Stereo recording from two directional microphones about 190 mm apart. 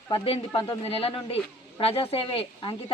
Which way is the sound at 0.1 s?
25° left (ahead or behind).